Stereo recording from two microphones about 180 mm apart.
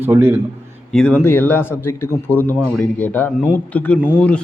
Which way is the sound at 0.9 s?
10° left (ahead or behind).